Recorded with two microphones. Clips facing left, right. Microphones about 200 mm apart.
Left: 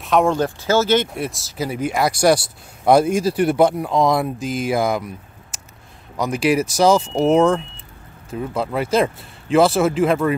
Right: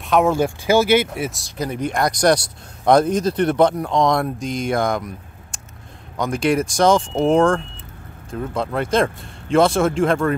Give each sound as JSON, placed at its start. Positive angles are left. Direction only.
{"t": 0.0, "sound": "speech", "side_deg": 0}